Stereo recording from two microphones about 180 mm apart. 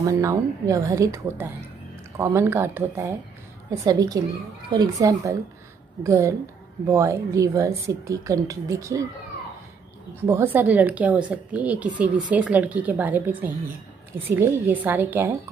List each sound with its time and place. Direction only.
0.0 s a woman's voice: 15° right (ahead or behind)
10.2 s a woman's voice: 15° right (ahead or behind)